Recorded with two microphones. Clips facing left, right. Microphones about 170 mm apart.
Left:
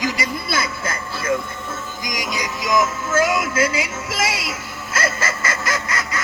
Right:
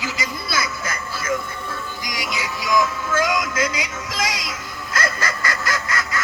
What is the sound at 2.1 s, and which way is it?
Music, 45° left (ahead or behind).